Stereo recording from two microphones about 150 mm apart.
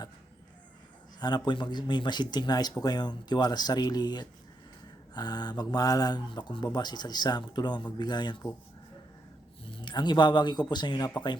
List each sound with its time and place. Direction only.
1.2 s speech: 30° left (ahead or behind)
9.7 s speech: 30° left (ahead or behind)